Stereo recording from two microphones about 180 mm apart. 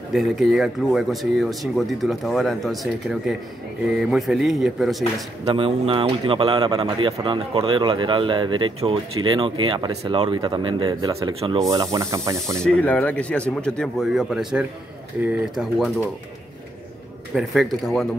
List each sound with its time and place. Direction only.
0.1 s speech: centre (ahead or behind)
5.4 s speech: 30° right (ahead or behind)
12.5 s speech: 5° left (ahead or behind)
17.4 s speech: centre (ahead or behind)